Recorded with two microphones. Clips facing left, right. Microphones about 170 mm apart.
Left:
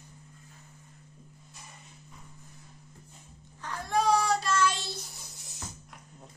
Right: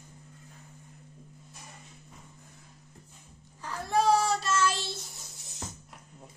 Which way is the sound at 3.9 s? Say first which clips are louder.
Right 1 dB; 5° right (ahead or behind).